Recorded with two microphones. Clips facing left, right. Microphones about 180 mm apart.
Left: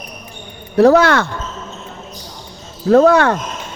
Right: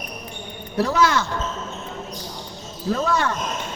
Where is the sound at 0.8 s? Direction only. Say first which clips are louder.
Left 10 dB; 65° left (ahead or behind).